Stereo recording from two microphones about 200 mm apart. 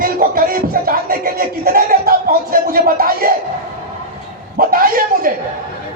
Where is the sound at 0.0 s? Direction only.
45° right (ahead or behind).